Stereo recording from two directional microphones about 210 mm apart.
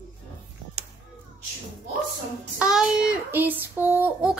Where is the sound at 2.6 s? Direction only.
5° right (ahead or behind).